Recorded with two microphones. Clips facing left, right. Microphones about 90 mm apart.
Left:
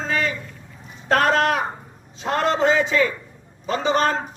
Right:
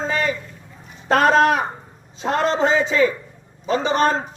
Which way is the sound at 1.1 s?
20° right (ahead or behind).